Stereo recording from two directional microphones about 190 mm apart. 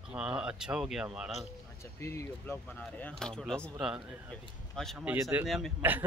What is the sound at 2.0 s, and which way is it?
Speech, 15° left (ahead or behind).